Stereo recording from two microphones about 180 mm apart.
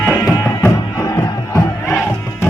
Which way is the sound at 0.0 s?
10° left (ahead or behind).